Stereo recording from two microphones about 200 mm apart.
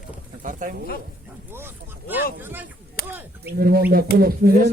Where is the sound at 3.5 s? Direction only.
50° right (ahead or behind).